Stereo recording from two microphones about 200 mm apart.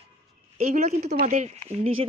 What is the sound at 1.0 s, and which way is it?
Speech, 40° right (ahead or behind).